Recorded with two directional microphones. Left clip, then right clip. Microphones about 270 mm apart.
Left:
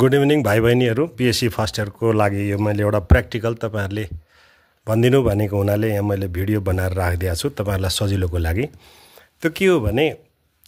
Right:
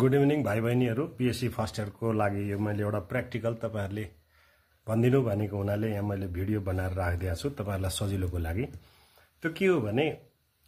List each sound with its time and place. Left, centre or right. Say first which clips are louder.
0.0 s speech: left 9 dB; left